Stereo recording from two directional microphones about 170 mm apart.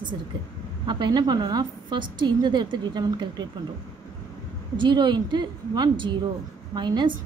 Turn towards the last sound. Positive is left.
turn(degrees=-25)  # may be behind; listen again after turning